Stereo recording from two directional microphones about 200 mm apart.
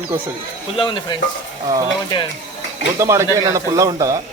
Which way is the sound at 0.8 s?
25° left (ahead or behind).